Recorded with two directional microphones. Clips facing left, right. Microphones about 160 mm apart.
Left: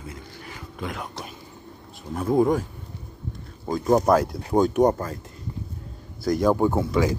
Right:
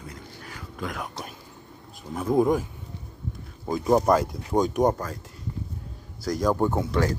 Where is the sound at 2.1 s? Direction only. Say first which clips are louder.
Left 1 dB; centre (ahead or behind).